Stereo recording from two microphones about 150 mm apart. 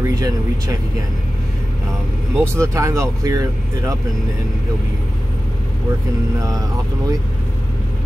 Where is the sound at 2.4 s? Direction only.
20° right (ahead or behind).